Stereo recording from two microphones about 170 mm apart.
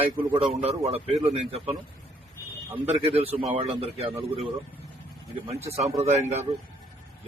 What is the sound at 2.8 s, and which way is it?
A man's voice, 35° right (ahead or behind).